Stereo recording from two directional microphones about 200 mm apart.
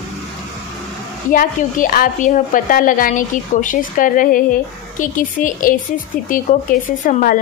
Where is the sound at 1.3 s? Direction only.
40° left (ahead or behind).